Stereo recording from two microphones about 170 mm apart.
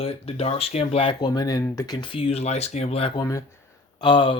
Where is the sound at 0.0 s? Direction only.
35° left (ahead or behind).